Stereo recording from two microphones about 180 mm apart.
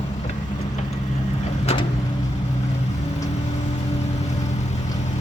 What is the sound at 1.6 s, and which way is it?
Vehicle, 35° left (ahead or behind).